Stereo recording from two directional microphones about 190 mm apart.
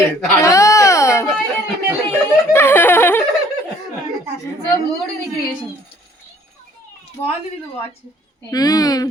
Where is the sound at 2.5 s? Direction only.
10° left (ahead or behind).